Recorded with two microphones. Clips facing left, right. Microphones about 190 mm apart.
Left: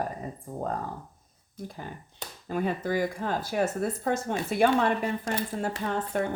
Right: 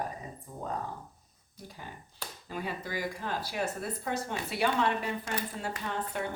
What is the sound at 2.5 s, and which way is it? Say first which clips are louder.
Speech: left 9 dB; 50° left (ahead or behind).